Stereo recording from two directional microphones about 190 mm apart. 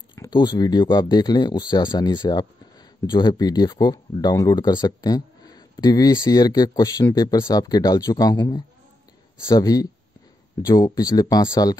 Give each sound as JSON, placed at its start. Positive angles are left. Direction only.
{"t": 0.1, "sound": "speech", "side_deg": 25}